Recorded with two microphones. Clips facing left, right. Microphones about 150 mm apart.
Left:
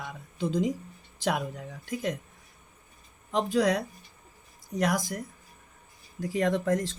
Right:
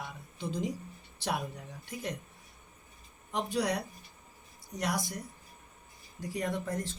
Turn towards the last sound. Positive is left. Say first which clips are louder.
# left 8 dB
turn(degrees=90)